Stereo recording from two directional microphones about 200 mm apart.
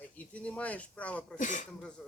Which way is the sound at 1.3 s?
40° left (ahead or behind).